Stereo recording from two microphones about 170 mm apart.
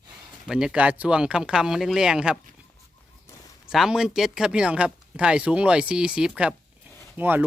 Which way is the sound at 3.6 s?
5° right (ahead or behind).